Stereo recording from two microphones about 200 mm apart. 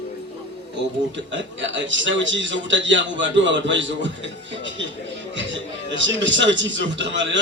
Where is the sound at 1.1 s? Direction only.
65° right (ahead or behind).